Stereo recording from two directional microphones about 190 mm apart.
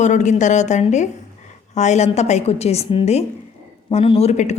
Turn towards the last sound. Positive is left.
turn(degrees=35)  # may be behind; listen again after turning